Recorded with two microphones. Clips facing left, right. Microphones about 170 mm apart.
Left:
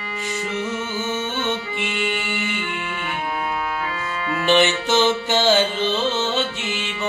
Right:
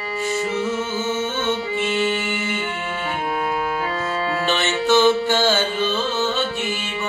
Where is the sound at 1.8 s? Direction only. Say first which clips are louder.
Right 4 dB; 45° right (ahead or behind).